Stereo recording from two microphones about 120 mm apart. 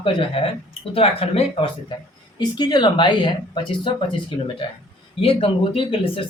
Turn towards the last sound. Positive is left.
turn(degrees=50)  # may be behind; listen again after turning